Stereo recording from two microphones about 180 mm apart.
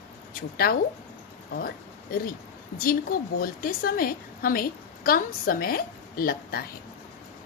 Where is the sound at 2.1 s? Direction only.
55° left (ahead or behind).